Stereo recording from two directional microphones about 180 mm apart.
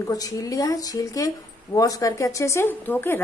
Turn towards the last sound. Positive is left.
turn(degrees=10)  # may be behind; listen again after turning